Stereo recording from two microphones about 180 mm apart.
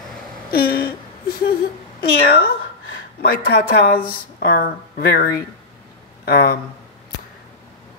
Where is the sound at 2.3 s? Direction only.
60° left (ahead or behind).